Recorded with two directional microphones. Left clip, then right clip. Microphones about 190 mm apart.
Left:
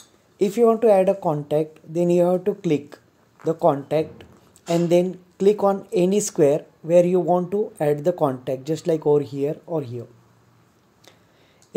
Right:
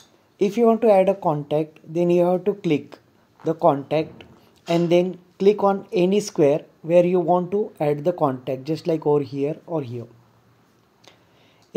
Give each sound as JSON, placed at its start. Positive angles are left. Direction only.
{"t": 0.4, "sound": "speech", "side_deg": 0}